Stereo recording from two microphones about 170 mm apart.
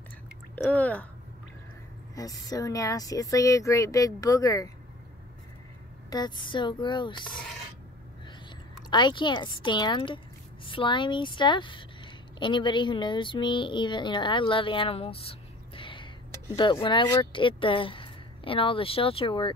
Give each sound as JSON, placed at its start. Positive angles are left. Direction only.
{"t": 0.6, "sound": "speech", "side_deg": 10}
{"t": 2.1, "sound": "speech", "side_deg": 20}
{"t": 6.0, "sound": "speech", "side_deg": 25}
{"t": 8.9, "sound": "speech", "side_deg": 25}